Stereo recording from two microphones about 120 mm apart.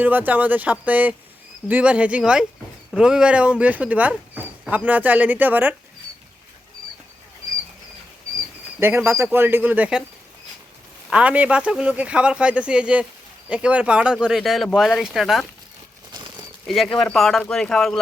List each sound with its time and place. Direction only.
0.0 s speech: 15° right (ahead or behind)
8.8 s speech: 20° right (ahead or behind)
11.1 s speech: 10° right (ahead or behind)
16.1 s a sound: 40° right (ahead or behind)
16.6 s speech: centre (ahead or behind)